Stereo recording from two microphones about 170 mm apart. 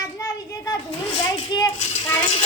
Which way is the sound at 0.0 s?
20° left (ahead or behind).